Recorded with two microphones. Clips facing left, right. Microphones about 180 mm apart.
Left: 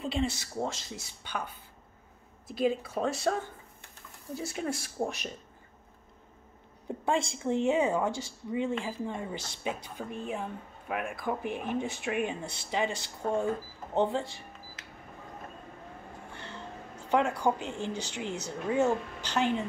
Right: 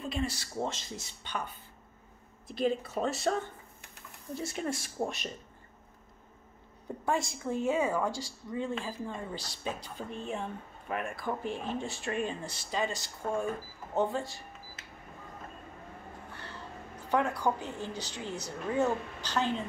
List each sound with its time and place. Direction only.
0.0 s speech: 25° left (ahead or behind)
0.6 s speech: centre (ahead or behind)
2.5 s speech: 5° left (ahead or behind)
4.4 s speech: centre (ahead or behind)
7.1 s a woman's voice: 25° left (ahead or behind)
16.3 s a sound: 20° left (ahead or behind)
17.1 s a woman's voice: 20° left (ahead or behind)